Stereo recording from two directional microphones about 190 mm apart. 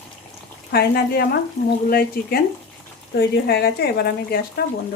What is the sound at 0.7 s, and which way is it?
Speech, 55° left (ahead or behind).